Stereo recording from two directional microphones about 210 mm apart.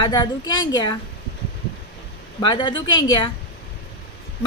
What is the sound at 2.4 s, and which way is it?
Child singing, 20° left (ahead or behind).